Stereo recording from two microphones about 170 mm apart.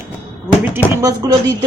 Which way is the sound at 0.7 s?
15° right (ahead or behind).